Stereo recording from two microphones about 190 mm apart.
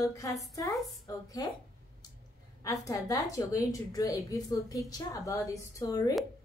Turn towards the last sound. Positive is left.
turn(degrees=20)  # may be behind; listen again after turning